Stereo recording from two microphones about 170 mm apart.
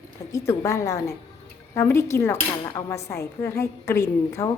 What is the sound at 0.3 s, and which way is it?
Speech, 15° left (ahead or behind).